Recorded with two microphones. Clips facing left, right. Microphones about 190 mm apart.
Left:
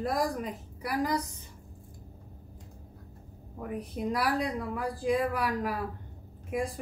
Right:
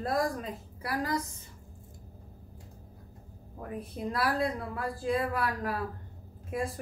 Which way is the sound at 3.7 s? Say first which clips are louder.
Left 3 dB; 15° left (ahead or behind).